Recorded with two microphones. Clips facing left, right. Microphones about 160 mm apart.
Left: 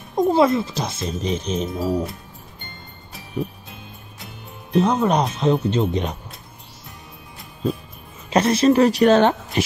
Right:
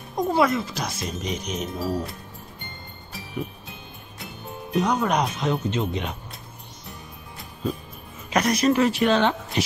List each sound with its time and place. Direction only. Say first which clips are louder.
0.1 s speech: left 5 dB; 25° left (ahead or behind)
3.4 s speech: left 5 dB; 25° left (ahead or behind)
4.7 s speech: left 4 dB; 25° left (ahead or behind)
8.3 s speech: left 5 dB; 30° left (ahead or behind); by 9.3 s 45° left (ahead or behind)